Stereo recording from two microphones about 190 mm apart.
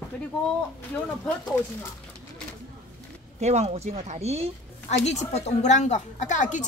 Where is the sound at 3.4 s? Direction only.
35° right (ahead or behind).